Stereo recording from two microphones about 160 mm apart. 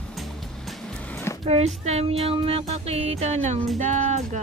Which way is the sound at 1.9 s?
40° right (ahead or behind).